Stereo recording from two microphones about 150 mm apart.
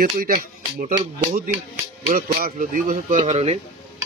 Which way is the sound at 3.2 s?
45° right (ahead or behind).